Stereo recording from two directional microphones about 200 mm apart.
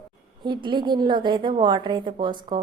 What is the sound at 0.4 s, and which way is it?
Speech, 25° right (ahead or behind).